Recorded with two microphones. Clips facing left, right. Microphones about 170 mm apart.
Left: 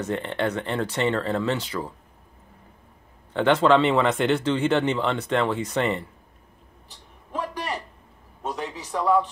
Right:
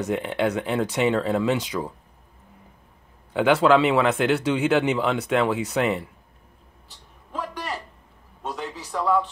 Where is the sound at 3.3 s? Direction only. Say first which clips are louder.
Right 1 dB; 10° right (ahead or behind).